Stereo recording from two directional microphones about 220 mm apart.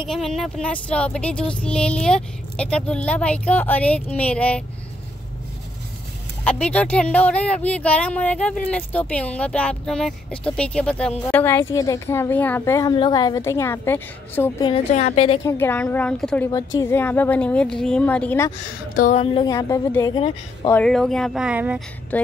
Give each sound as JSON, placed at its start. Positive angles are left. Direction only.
{"t": 0.1, "sound": "speech", "side_deg": 0}
{"t": 6.6, "sound": "speech", "side_deg": 5}
{"t": 14.7, "sound": "a woman's voice", "side_deg": 30}
{"t": 15.4, "sound": "a woman's voice", "side_deg": 10}
{"t": 16.4, "sound": "a woman's voice", "side_deg": 15}
{"t": 19.1, "sound": "a woman's voice", "side_deg": 20}
{"t": 20.7, "sound": "speech", "side_deg": 5}
{"t": 22.1, "sound": "a woman's voice", "side_deg": 5}